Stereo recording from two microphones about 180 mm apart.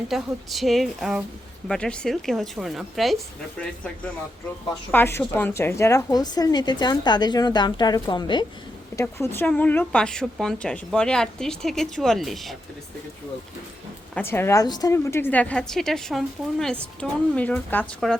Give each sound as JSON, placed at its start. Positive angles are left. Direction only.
{"t": 0.1, "sound": "speech", "side_deg": 0}
{"t": 4.9, "sound": "a woman's voice", "side_deg": 10}
{"t": 14.2, "sound": "a woman's voice", "side_deg": 10}